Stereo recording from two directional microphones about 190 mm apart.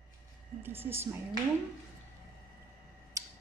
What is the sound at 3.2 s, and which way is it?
Tick-tock, 20° right (ahead or behind).